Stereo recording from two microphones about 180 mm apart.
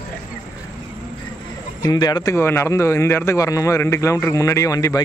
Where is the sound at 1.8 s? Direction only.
20° left (ahead or behind).